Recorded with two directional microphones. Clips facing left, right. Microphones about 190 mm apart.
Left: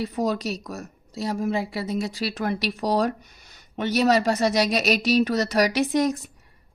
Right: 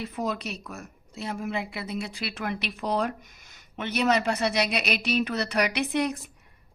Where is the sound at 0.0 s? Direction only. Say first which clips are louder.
Left 6 dB; 35° left (ahead or behind).